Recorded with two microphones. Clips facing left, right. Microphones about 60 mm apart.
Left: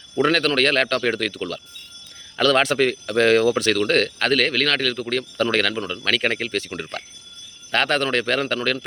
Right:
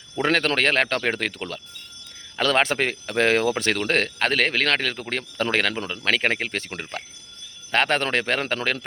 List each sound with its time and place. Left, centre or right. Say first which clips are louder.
0.2 s speech: left 3 dB; right